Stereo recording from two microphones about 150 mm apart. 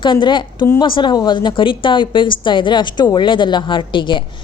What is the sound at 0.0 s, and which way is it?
A woman's voice, 30° left (ahead or behind).